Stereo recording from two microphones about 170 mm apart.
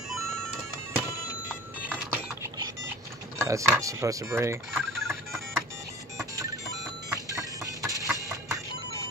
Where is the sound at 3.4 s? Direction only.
15° right (ahead or behind).